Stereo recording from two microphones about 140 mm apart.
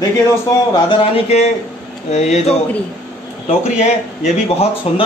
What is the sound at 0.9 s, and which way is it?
Speech, 50° left (ahead or behind).